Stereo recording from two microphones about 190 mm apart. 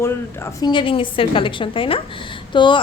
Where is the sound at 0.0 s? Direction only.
15° left (ahead or behind).